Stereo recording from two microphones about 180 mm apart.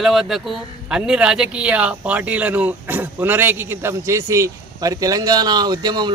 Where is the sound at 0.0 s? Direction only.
Centre (ahead or behind).